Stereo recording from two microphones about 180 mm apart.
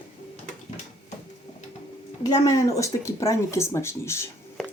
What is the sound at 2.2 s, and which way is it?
Speech, 20° left (ahead or behind).